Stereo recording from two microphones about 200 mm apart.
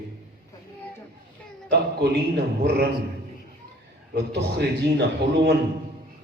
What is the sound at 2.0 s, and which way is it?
Speech, 55° right (ahead or behind).